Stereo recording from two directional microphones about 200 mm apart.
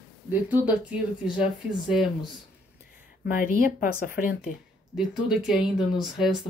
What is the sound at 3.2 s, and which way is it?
Speech, 45° left (ahead or behind).